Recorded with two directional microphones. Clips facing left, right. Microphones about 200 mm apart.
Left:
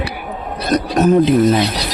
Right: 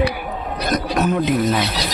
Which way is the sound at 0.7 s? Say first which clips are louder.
Left 7 dB; 35° left (ahead or behind).